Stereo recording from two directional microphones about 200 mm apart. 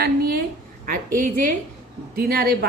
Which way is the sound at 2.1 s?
50° right (ahead or behind).